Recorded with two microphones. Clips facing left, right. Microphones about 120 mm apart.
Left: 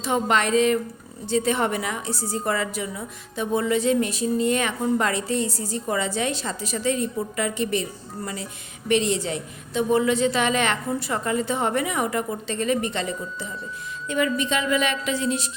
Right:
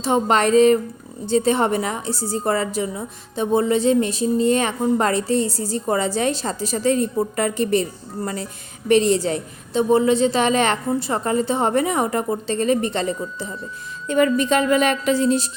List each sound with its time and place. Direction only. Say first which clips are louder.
0.0 s a woman's voice: right 4 dB; 35° right (ahead or behind)